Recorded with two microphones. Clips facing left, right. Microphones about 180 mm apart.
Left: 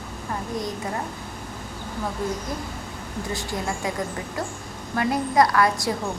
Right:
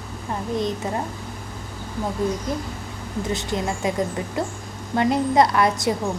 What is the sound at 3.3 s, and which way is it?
A woman's voice, 20° right (ahead or behind).